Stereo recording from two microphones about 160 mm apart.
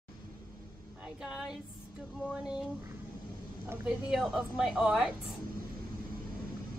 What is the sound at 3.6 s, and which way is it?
Speech, 15° right (ahead or behind).